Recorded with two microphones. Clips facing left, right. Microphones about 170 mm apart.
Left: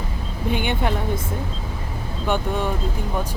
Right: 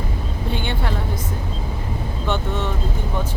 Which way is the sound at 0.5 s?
15° left (ahead or behind).